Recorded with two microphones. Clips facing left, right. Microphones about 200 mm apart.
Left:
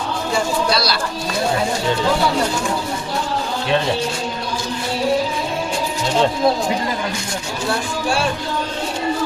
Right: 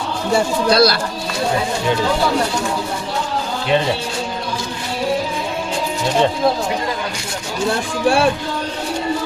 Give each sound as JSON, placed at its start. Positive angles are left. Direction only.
{"t": 0.7, "sound": "speech", "side_deg": -55}